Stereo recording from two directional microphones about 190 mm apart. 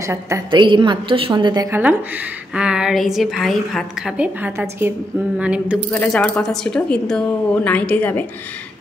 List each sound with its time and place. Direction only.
0.0 s a woman's voice: 15° right (ahead or behind)
5.4 s a sound: 5° right (ahead or behind)
5.9 s speech: 5° left (ahead or behind)